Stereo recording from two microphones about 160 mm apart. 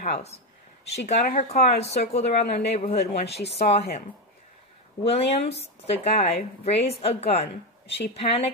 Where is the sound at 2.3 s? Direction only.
90° left.